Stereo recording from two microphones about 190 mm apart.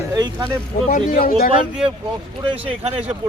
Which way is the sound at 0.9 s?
50° left (ahead or behind).